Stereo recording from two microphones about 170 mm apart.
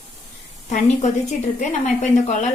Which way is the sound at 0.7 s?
45° left (ahead or behind).